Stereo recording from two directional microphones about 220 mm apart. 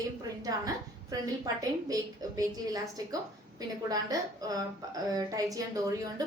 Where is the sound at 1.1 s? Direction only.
15° right (ahead or behind).